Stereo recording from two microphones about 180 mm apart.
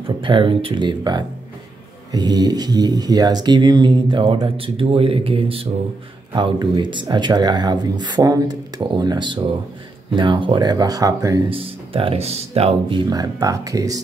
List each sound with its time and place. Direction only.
0.0 s speech: 30° right (ahead or behind)
11.5 s speech: 30° right (ahead or behind)
13.1 s speech: 20° right (ahead or behind)